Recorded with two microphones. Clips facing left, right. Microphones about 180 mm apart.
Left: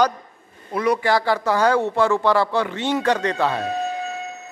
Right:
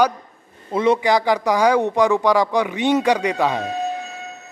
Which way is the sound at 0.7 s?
25° right (ahead or behind).